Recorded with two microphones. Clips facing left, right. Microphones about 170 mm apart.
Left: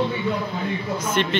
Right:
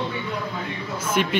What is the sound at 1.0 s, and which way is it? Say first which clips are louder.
Speech: right 2 dB; 10° right (ahead or behind).